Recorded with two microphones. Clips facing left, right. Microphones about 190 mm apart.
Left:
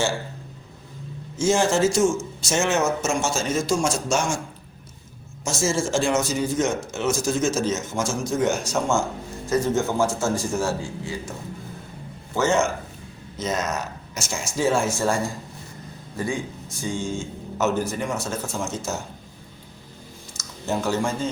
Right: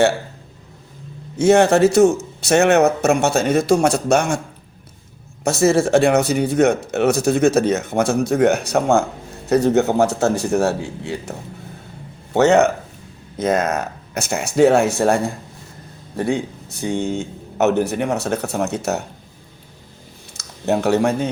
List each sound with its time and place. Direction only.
1.4 s a man's voice: 65° right (ahead or behind)
5.5 s a man's voice: 60° right (ahead or behind)
20.3 s a sound: 65° right (ahead or behind)